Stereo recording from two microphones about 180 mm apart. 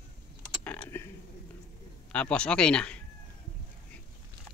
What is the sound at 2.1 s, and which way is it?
Speech, 5° left (ahead or behind).